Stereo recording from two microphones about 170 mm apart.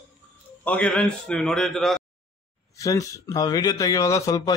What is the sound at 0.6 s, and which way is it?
A man's voice, 10° left (ahead or behind).